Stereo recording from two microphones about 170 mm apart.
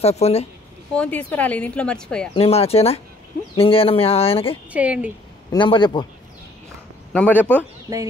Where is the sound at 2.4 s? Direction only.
35° left (ahead or behind).